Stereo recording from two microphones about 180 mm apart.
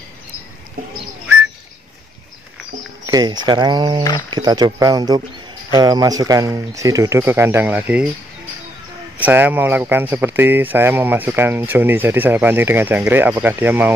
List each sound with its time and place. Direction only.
3.1 s speech: 25° right (ahead or behind); by 8.1 s 10° right (ahead or behind)
9.2 s speech: 10° right (ahead or behind)